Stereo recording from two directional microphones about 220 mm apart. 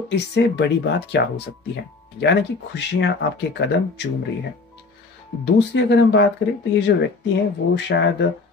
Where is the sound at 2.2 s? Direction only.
50° left (ahead or behind).